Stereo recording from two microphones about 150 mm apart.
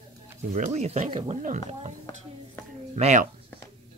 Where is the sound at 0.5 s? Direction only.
50° right (ahead or behind).